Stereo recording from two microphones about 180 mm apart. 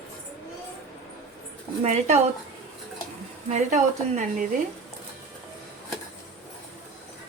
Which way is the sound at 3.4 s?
40° right (ahead or behind).